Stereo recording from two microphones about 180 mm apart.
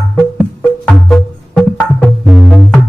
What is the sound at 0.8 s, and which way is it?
Music, 5° left (ahead or behind).